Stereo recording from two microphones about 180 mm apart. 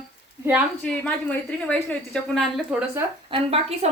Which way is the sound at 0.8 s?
5° left (ahead or behind).